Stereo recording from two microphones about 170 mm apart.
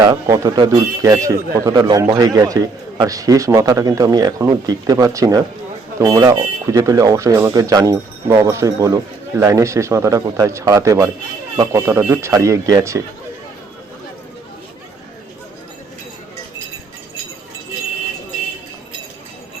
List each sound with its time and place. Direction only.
0.0 s speech: 20° right (ahead or behind)